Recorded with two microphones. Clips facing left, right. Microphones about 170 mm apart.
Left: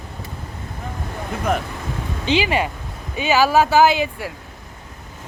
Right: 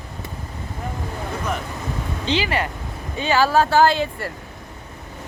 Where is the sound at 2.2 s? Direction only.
15° left (ahead or behind).